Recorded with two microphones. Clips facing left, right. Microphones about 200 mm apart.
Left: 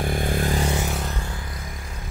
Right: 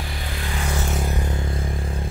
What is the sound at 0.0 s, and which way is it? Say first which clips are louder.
Vehicle: left 8 dB; 50° left (ahead or behind).